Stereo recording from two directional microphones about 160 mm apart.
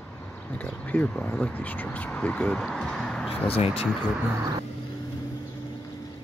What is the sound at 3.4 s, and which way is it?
Speech, 35° left (ahead or behind).